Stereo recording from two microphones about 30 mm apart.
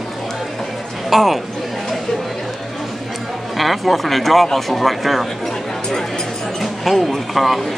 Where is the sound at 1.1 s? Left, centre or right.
Centre.